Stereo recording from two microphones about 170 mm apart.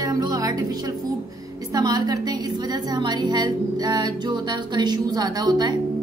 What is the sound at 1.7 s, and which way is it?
A woman's voice, 20° right (ahead or behind).